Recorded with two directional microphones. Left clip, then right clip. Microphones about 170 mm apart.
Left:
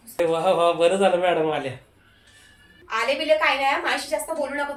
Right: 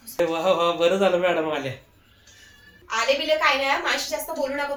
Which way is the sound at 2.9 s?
10° left (ahead or behind).